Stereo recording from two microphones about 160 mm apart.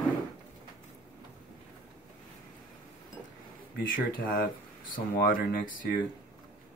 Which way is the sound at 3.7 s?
60° left (ahead or behind).